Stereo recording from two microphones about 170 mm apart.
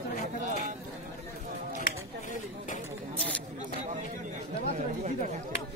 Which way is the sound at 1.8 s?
50° left (ahead or behind).